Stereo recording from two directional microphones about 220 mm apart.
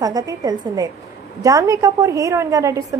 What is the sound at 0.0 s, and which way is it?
A woman's voice, 15° right (ahead or behind).